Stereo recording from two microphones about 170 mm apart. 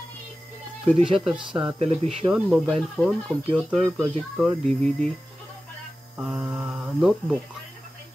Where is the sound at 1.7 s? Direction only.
35° right (ahead or behind).